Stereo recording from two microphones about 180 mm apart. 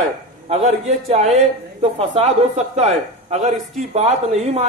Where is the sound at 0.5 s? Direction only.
40° right (ahead or behind).